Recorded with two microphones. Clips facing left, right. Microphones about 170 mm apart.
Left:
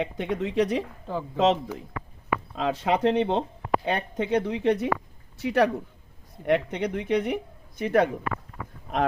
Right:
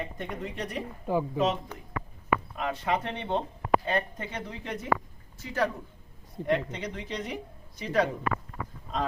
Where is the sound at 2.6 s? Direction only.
90° left.